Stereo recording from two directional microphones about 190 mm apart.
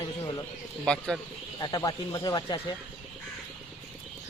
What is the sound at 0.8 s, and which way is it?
Speech, 5° left (ahead or behind).